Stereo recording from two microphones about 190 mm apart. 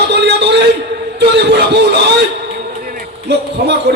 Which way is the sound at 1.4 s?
60° right (ahead or behind).